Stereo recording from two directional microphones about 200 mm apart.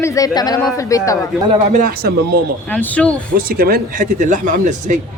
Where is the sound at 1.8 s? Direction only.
50° right (ahead or behind).